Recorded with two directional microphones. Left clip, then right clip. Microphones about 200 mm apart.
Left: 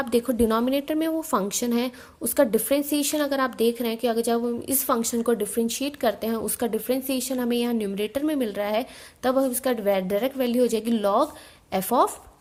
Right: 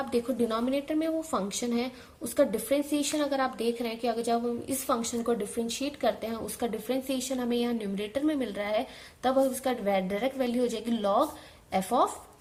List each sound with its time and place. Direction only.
0.0 s a woman's voice: 45° left (ahead or behind)